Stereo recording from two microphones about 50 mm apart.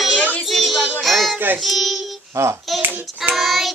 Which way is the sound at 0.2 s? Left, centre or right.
Left.